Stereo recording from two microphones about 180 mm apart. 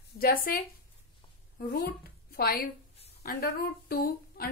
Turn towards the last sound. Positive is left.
turn(degrees=60)  # may be behind; listen again after turning